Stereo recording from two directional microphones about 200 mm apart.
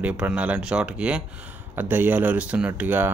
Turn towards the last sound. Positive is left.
turn(degrees=-10)  # may be behind; listen again after turning